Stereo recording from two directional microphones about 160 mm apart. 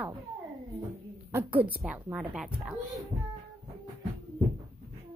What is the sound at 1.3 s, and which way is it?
Speech, 10° right (ahead or behind).